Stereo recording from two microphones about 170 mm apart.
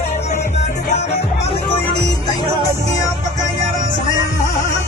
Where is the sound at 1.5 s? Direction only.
25° left (ahead or behind).